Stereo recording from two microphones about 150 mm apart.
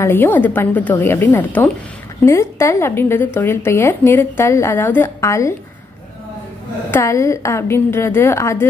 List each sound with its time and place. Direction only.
0.0 s a woman's voice: 15° left (ahead or behind)
6.9 s a woman's voice: 20° left (ahead or behind)